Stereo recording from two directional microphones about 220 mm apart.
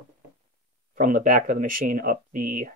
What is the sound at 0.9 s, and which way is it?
Speech, 35° right (ahead or behind).